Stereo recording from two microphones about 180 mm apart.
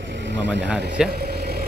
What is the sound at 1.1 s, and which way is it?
Vehicle, 60° right (ahead or behind).